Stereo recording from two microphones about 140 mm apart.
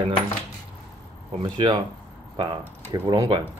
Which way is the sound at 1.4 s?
35° right (ahead or behind).